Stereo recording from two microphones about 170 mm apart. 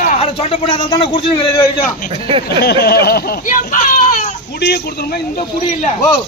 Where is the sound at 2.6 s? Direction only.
70° left (ahead or behind); by 4.2 s 50° left (ahead or behind).